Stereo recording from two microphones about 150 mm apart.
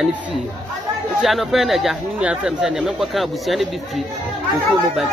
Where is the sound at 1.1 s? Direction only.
Centre (ahead or behind).